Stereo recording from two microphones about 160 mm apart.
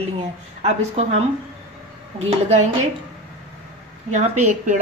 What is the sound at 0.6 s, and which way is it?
Speech, 40° right (ahead or behind).